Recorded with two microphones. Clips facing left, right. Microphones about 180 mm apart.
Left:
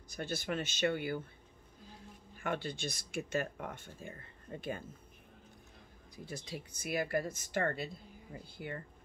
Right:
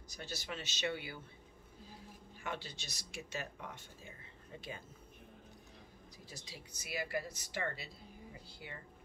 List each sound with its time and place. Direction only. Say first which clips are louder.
0.1 s speech: left 8 dB; 55° left (ahead or behind)
2.3 s speech: left 7 dB; 55° left (ahead or behind)
6.1 s speech: left 10 dB; 55° left (ahead or behind)